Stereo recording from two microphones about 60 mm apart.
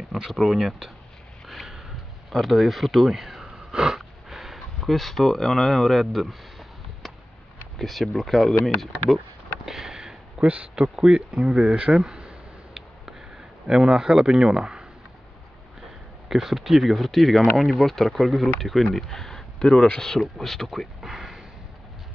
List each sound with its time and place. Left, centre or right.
0.1 s speech: centre
1.5 s sniff: centre
2.3 s speech: centre
7.8 s speech: centre
9.7 s sniff: centre
10.4 s speech: right
12.0 s a sound: centre
13.7 s speech: centre
16.3 s speech: centre